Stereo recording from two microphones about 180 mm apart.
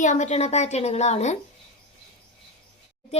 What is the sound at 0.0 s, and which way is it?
Speech, 45° left (ahead or behind).